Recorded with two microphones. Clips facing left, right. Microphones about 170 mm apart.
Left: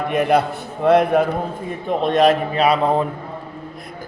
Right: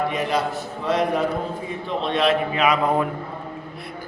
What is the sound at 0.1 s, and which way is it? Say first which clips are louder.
A man's voice: left 6 dB; 60° left (ahead or behind).